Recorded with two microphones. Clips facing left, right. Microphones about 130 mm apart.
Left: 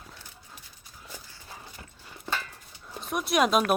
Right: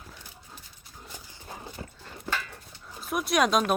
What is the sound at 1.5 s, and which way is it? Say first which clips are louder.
Clip-clop: right 6 dB; 30° right (ahead or behind).